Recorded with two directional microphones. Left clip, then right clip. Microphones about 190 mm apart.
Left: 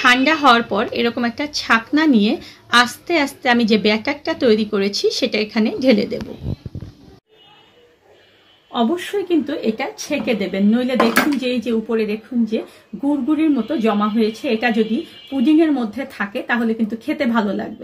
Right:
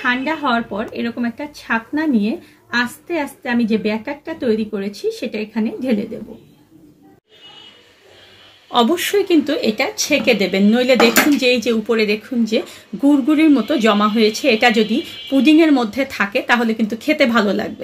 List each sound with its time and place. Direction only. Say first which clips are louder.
0.0 s speech: left 6 dB; 30° left (ahead or behind)
8.7 s speech: right 5 dB; 35° right (ahead or behind)